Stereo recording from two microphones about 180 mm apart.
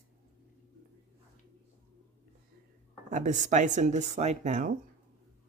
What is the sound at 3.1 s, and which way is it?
Speech, 45° right (ahead or behind).